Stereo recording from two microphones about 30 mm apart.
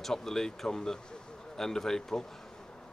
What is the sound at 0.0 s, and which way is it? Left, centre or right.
Speech, centre.